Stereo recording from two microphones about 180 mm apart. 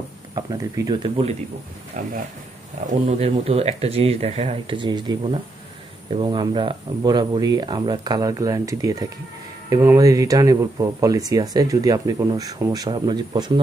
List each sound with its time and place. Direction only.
0.3 s speech: 25° right (ahead or behind)
2.0 s speech: 40° right (ahead or behind); by 13.5 s 25° right (ahead or behind)